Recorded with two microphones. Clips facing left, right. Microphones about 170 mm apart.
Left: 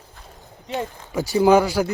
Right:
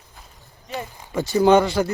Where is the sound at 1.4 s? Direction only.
5° left (ahead or behind).